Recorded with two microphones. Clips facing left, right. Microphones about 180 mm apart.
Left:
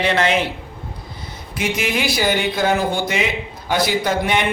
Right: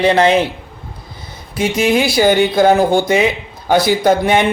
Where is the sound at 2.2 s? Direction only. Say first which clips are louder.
Right 9 dB; 40° right (ahead or behind).